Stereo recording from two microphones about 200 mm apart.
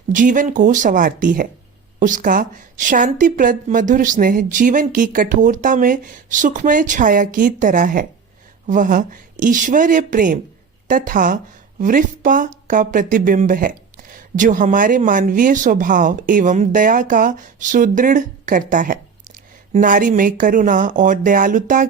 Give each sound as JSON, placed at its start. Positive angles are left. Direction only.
{"t": 0.1, "sound": "speech", "side_deg": -40}